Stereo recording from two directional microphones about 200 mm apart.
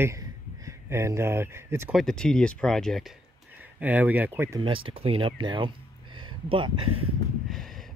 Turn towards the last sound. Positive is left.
turn(degrees=0)  # may be behind; listen again after turning